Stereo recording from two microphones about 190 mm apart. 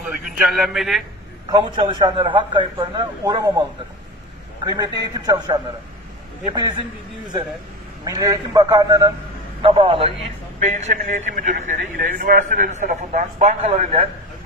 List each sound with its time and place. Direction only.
0.4 s a man's voice: centre (ahead or behind)
1.5 s a man's voice: 25° right (ahead or behind)
4.7 s a man's voice: 20° right (ahead or behind)
8.0 s a man's voice: 20° right (ahead or behind)
10.6 s a man's voice: 40° right (ahead or behind)